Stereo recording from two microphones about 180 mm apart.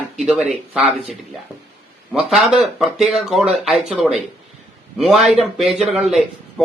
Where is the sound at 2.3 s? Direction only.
5° right (ahead or behind).